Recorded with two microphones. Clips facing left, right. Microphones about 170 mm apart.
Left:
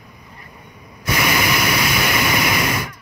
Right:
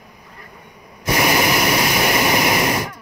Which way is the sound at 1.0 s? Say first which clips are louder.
Right 3 dB; 35° right (ahead or behind).